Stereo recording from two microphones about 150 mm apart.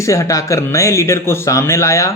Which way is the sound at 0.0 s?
20° left (ahead or behind).